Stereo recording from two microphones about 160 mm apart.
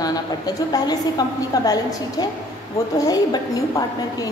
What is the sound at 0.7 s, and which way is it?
A woman's voice, 25° left (ahead or behind).